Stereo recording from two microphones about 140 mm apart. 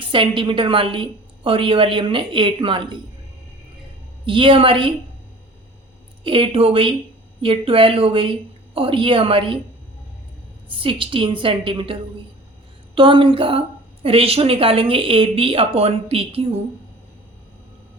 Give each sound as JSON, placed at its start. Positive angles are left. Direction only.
{"t": 0.0, "sound": "a woman's voice", "side_deg": -35}
{"t": 4.3, "sound": "a woman's voice", "side_deg": -40}
{"t": 6.2, "sound": "a woman's voice", "side_deg": -40}
{"t": 10.7, "sound": "a woman's voice", "side_deg": -40}